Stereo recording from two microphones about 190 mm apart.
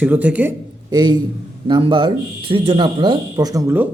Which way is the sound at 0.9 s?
20° right (ahead or behind).